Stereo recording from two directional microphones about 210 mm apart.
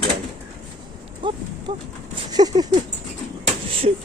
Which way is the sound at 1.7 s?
20° right (ahead or behind).